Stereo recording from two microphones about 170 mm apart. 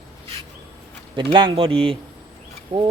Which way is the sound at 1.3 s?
30° right (ahead or behind).